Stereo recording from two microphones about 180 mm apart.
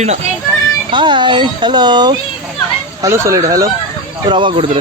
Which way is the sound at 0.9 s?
25° right (ahead or behind).